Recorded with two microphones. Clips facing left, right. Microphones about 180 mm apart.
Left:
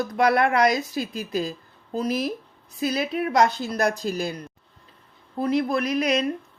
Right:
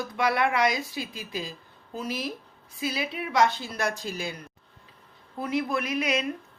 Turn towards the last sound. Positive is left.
turn(degrees=35)  # may be behind; listen again after turning